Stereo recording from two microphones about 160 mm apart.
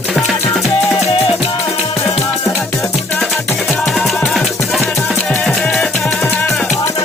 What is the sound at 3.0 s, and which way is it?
Music, 5° left (ahead or behind).